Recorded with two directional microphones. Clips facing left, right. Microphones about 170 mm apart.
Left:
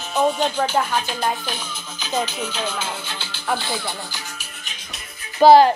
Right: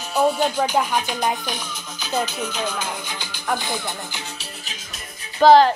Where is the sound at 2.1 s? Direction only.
10° left (ahead or behind).